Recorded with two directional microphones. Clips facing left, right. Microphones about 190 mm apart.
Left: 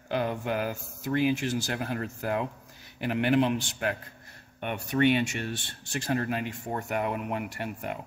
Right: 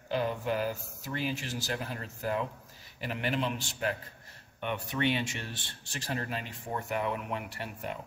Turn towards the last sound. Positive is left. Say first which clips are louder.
# left 4 dB
turn(degrees=50)  # may be behind; listen again after turning